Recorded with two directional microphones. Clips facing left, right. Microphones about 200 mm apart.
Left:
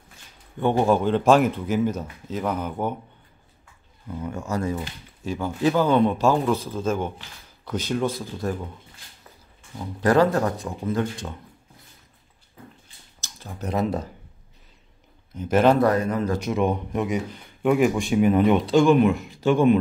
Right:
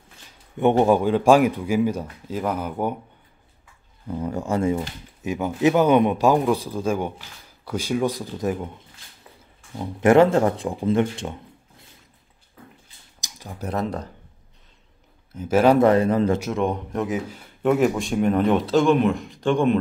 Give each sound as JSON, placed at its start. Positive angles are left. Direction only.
{"t": 0.6, "sound": "a man's voice", "side_deg": -20}
{"t": 4.2, "sound": "a man's voice", "side_deg": -35}
{"t": 9.8, "sound": "speech", "side_deg": -25}
{"t": 13.2, "sound": "a sound", "side_deg": -15}
{"t": 13.7, "sound": "a man's voice", "side_deg": 5}
{"t": 15.3, "sound": "a man's voice", "side_deg": -5}
{"t": 15.8, "sound": "speech", "side_deg": -30}
{"t": 16.3, "sound": "a man's voice", "side_deg": 0}